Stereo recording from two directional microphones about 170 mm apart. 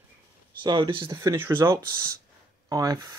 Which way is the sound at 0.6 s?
30° right (ahead or behind).